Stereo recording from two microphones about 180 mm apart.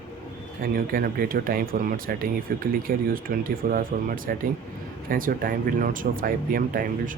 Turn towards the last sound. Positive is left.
turn(degrees=-50)  # may be behind; listen again after turning